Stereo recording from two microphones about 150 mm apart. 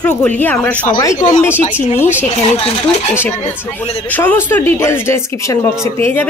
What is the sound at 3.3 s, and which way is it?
Speech, 45° left (ahead or behind).